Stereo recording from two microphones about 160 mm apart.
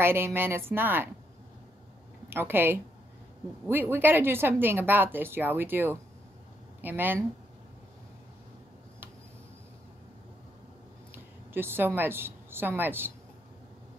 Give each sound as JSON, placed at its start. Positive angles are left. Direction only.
{"t": 0.0, "sound": "speech", "side_deg": -15}
{"t": 2.2, "sound": "speech", "side_deg": -15}
{"t": 3.9, "sound": "speech", "side_deg": -15}
{"t": 11.5, "sound": "speech", "side_deg": -15}